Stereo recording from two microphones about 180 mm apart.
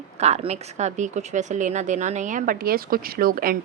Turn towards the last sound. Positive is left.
turn(degrees=-50)  # may be behind; listen again after turning